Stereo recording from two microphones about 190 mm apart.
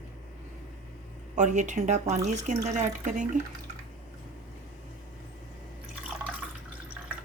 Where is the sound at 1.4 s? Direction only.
40° right (ahead or behind).